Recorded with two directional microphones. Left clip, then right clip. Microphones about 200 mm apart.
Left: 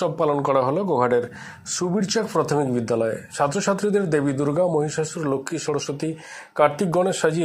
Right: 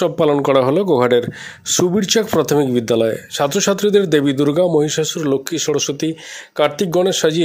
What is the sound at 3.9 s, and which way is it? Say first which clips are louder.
Speech: right 10 dB; 65° right (ahead or behind).